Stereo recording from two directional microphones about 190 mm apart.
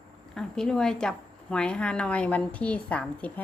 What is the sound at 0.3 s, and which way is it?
A woman's voice, 5° left (ahead or behind).